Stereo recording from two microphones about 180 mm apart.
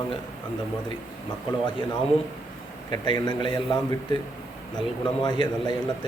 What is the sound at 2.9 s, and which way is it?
Speech, 25° left (ahead or behind).